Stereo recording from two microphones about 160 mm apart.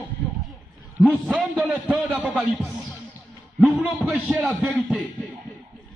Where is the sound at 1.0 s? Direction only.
10° right (ahead or behind).